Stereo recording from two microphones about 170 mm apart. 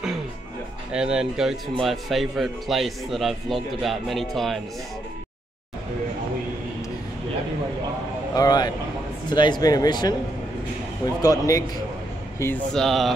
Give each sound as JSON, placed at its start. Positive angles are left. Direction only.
{"t": 0.9, "sound": "speech", "side_deg": -5}
{"t": 8.4, "sound": "speech", "side_deg": 20}
{"t": 11.1, "sound": "speech", "side_deg": 20}
{"t": 12.7, "sound": "speech", "side_deg": 0}